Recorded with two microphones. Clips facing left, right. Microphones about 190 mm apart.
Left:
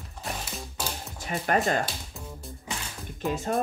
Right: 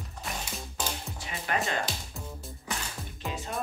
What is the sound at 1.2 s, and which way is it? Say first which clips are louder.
Speech: left 7 dB; 45° left (ahead or behind).